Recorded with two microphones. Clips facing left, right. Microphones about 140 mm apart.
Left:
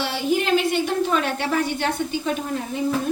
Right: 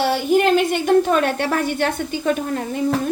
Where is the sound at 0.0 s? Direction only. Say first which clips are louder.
Right 6 dB; 50° right (ahead or behind).